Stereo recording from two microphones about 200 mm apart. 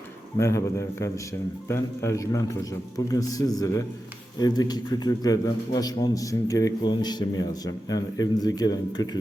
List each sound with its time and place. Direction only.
0.3 s a man's voice: 15° left (ahead or behind)